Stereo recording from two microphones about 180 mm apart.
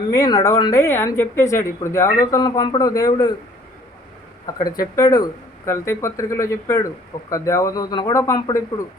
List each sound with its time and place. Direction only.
0.1 s speech: 20° left (ahead or behind)
4.4 s speech: 20° left (ahead or behind)